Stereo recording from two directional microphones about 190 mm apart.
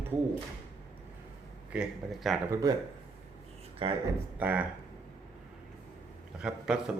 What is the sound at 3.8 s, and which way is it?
Speech, 30° right (ahead or behind).